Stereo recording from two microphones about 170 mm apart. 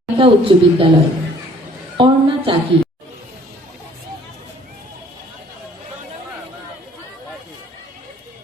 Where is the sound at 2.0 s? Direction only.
30° right (ahead or behind).